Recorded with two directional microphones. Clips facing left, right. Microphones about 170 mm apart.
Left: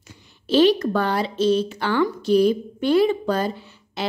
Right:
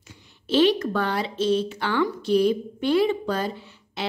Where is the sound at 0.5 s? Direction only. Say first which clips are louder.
Left 3 dB; 40° left (ahead or behind).